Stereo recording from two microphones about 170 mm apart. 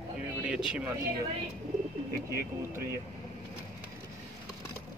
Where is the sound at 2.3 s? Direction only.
15° right (ahead or behind).